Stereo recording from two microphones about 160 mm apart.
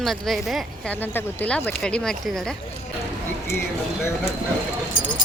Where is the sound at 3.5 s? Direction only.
15° left (ahead or behind).